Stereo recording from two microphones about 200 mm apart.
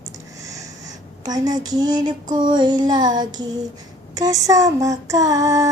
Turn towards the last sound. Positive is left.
turn(degrees=-15)  # may be behind; listen again after turning